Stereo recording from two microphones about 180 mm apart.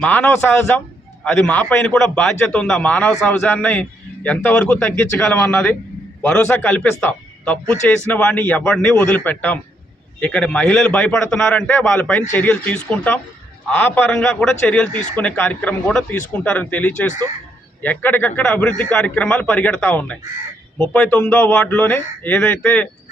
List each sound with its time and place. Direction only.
0.0 s a man's voice: 5° left (ahead or behind)